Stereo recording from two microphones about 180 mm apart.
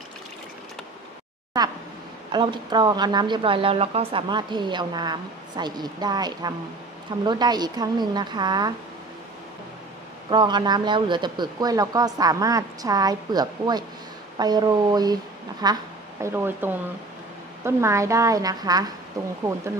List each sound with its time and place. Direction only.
1.5 s a sound: 20° right (ahead or behind)
2.3 s speech: 25° right (ahead or behind)
10.3 s a woman's voice: 25° right (ahead or behind)